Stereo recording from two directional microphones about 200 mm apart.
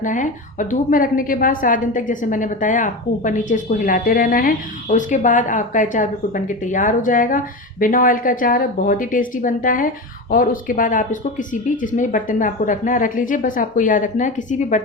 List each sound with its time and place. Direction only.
0.0 s a woman's voice: 40° left (ahead or behind)